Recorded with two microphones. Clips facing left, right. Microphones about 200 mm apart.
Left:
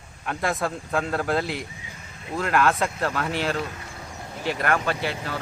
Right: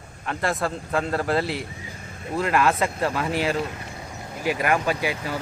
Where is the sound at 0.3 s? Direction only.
Centre (ahead or behind).